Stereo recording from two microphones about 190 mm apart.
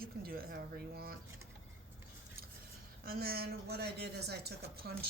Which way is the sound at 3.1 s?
50° right (ahead or behind).